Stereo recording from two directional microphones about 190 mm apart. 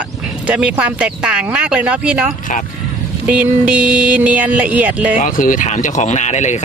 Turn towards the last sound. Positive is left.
turn(degrees=35)  # may be behind; listen again after turning